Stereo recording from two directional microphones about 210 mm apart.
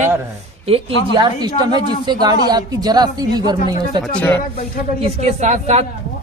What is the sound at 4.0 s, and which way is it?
Speech, 10° left (ahead or behind).